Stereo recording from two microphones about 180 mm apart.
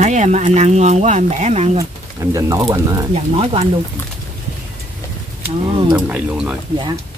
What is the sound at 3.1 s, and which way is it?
Speech, 30° right (ahead or behind).